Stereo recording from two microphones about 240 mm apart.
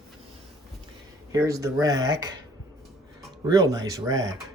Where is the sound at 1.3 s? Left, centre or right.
Centre.